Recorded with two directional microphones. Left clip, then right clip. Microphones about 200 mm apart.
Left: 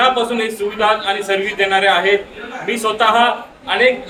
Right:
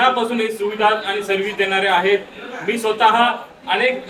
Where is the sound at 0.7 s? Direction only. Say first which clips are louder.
Left 2 dB; 20° left (ahead or behind).